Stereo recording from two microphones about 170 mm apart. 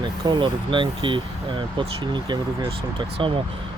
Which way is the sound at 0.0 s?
25° right (ahead or behind).